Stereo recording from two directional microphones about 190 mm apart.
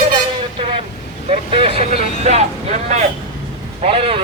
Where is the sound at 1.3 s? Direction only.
30° right (ahead or behind).